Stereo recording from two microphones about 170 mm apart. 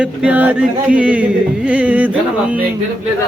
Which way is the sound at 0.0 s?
5° right (ahead or behind).